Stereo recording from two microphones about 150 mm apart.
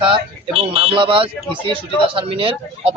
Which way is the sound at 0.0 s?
40° right (ahead or behind).